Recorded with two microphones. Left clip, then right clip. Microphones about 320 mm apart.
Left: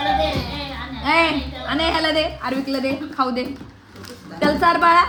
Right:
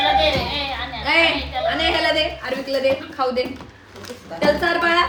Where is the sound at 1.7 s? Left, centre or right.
Centre.